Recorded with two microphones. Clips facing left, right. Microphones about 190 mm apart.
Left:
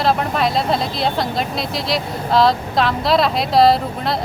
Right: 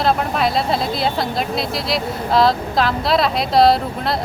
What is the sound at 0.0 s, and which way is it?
Speech, centre (ahead or behind).